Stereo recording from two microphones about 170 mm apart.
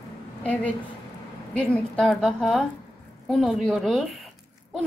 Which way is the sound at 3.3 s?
Centre (ahead or behind).